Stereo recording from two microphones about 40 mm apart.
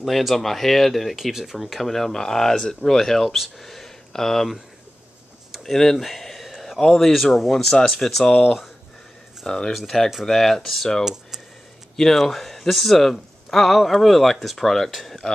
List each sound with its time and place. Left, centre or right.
0.0 s a man's voice: centre
1.1 s a man's voice: centre
5.6 s a sound: centre
6.9 s a man's voice: centre
8.3 s speech: left
9.7 s a man's voice: centre
12.2 s a man's voice: centre